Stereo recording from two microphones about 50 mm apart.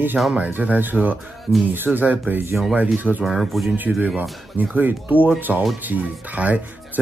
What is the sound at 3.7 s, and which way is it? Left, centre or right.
Speech, right.